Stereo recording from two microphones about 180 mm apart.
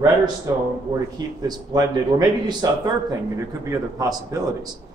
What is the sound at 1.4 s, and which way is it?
A man's voice, 20° right (ahead or behind).